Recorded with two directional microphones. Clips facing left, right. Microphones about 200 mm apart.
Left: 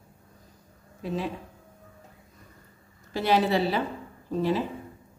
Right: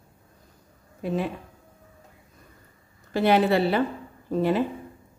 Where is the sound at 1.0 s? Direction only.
55° right (ahead or behind).